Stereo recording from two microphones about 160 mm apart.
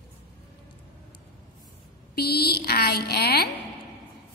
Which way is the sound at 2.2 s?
80° left.